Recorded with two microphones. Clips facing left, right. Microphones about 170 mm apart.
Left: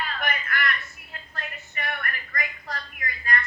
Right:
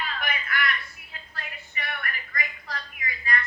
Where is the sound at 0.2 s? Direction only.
45° left (ahead or behind).